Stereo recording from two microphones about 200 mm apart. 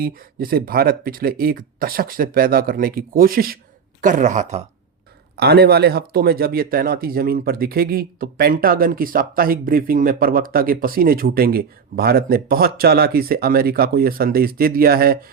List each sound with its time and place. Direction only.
0.0 s speech: 45° right (ahead or behind)
5.4 s speech: 55° right (ahead or behind)